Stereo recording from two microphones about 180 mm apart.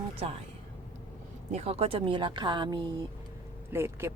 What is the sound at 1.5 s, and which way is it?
Speech, 35° right (ahead or behind).